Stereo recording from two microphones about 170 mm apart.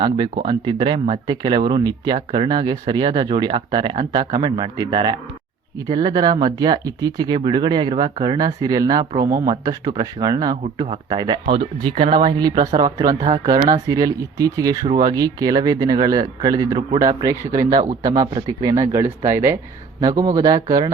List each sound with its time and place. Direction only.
0.4 s speech: 25° right (ahead or behind)